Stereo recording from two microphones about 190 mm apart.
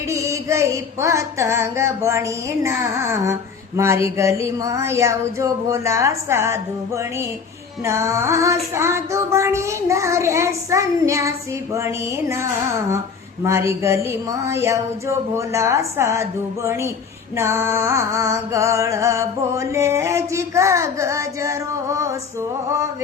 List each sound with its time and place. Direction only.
0.1 s female singing: 15° right (ahead or behind)